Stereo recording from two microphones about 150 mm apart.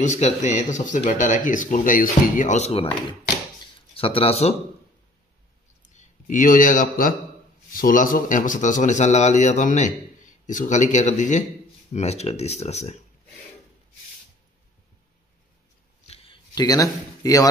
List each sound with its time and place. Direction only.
0.0 s a man's voice: 50° left (ahead or behind)
5.9 s a man's voice: 60° left (ahead or behind); by 12.9 s 45° left (ahead or behind)
16.5 s speech: 25° left (ahead or behind)